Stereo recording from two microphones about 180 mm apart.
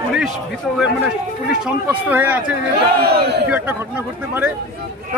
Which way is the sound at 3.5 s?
10° right (ahead or behind).